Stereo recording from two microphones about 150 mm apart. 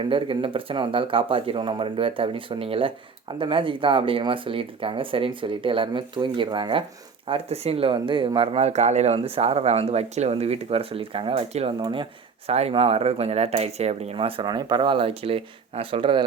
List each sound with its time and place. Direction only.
0.0 s speech: 35° right (ahead or behind)
12.5 s speech: 45° right (ahead or behind)